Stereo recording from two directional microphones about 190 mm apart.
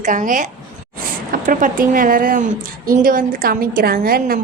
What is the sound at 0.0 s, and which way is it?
A woman's voice, 45° right (ahead or behind).